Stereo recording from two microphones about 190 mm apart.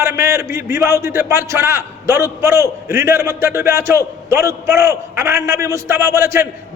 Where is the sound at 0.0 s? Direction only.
15° right (ahead or behind).